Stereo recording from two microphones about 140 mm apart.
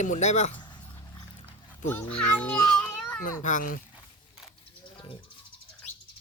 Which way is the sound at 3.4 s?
70° left (ahead or behind).